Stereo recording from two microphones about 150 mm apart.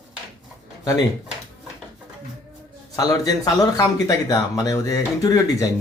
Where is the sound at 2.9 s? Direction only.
25° left (ahead or behind).